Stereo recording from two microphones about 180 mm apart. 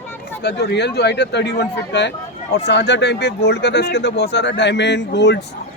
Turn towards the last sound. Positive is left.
turn(degrees=75)  # may be behind; listen again after turning